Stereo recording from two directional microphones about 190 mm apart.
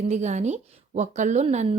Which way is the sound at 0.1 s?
35° right (ahead or behind).